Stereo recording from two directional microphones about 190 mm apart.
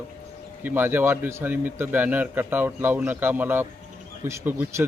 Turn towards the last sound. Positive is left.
turn(degrees=-10)  # may be behind; listen again after turning